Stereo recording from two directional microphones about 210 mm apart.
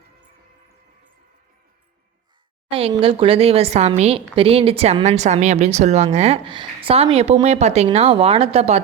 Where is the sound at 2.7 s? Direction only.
25° right (ahead or behind).